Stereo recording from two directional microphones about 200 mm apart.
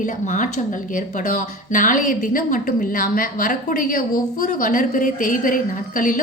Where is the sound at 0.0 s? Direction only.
40° left (ahead or behind).